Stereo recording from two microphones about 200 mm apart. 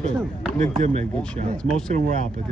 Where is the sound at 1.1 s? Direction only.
5° left (ahead or behind).